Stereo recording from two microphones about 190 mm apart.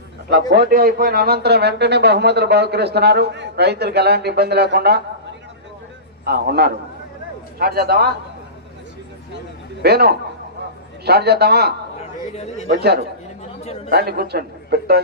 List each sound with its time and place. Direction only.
0.3 s a man's voice: 55° right (ahead or behind)
6.2 s a man's voice: 55° right (ahead or behind)
9.8 s a man's voice: 55° right (ahead or behind)
13.6 s a man's voice: 35° left (ahead or behind)
13.9 s a man's voice: 55° right (ahead or behind)